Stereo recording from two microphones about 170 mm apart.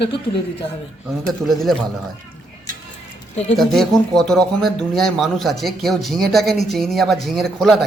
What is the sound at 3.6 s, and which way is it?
Speech, centre (ahead or behind).